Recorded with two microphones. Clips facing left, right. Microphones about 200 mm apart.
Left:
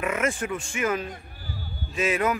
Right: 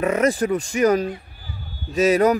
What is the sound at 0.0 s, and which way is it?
A man's voice, 35° right (ahead or behind).